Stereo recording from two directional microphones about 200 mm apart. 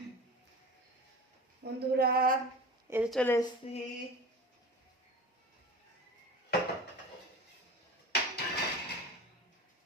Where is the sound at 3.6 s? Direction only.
30° left (ahead or behind).